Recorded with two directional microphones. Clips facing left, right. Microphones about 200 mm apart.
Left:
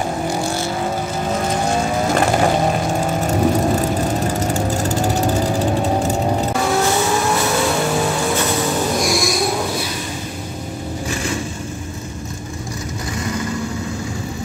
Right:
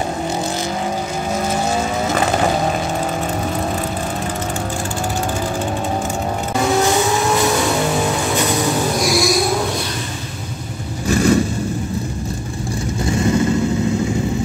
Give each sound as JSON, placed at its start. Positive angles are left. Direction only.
{"t": 9.0, "sound": "a sound", "side_deg": 0}
{"t": 11.1, "sound": "vehicle", "side_deg": -40}
{"t": 13.0, "sound": "vehicle", "side_deg": -25}